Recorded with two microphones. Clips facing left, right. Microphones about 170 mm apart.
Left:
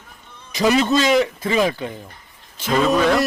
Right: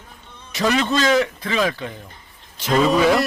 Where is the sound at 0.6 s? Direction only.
15° left (ahead or behind).